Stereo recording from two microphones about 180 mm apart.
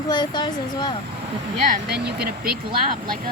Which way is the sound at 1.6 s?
55° right (ahead or behind).